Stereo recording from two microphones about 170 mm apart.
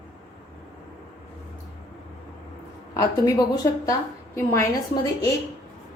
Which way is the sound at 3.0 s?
20° left (ahead or behind).